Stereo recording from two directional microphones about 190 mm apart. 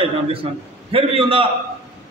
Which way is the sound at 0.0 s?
30° right (ahead or behind).